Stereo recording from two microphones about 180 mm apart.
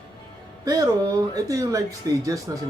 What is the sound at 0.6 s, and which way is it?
Speech, 20° right (ahead or behind).